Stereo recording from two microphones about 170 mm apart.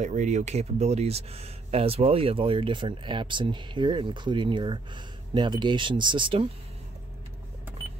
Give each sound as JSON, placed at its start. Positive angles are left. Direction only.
{"t": 0.0, "sound": "speech", "side_deg": -45}